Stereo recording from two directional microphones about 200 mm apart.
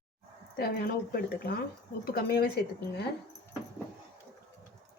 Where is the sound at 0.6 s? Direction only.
50° left (ahead or behind).